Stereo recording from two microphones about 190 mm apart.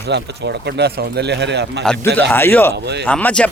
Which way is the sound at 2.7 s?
60° right (ahead or behind).